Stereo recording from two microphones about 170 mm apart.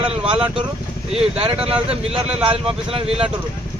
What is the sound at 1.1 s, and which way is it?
Speech, 35° right (ahead or behind).